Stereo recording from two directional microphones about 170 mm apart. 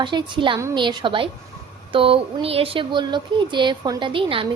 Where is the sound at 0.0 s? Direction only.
30° right (ahead or behind).